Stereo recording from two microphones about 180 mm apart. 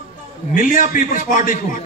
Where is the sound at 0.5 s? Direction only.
50° left (ahead or behind).